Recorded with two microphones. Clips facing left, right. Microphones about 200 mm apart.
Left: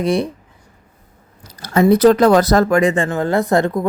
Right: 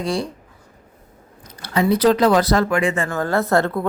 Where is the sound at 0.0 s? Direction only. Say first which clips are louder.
Left 6 dB; 20° left (ahead or behind).